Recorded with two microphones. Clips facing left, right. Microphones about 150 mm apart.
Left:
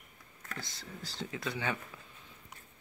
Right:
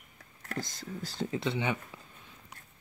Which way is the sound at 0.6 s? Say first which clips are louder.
Right 9 dB; 45° right (ahead or behind).